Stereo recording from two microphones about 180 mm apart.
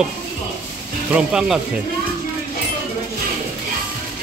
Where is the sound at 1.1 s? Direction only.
5° right (ahead or behind).